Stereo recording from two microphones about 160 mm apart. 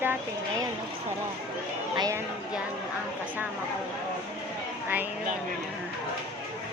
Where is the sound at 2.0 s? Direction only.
20° right (ahead or behind).